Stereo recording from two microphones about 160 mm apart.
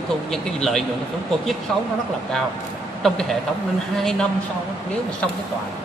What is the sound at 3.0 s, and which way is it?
Speech, centre (ahead or behind).